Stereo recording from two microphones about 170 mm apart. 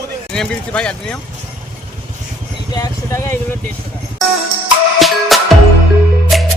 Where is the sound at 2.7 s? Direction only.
20° left (ahead or behind).